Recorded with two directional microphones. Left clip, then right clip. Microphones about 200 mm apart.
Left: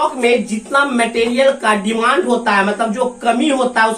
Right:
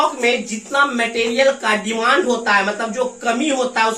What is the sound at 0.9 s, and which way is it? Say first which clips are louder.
Speech: left 3 dB; centre (ahead or behind).